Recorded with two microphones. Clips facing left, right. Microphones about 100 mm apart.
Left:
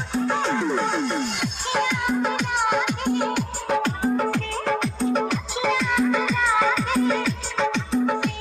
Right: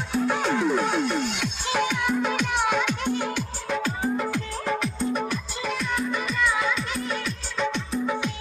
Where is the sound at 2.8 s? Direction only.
45° left (ahead or behind).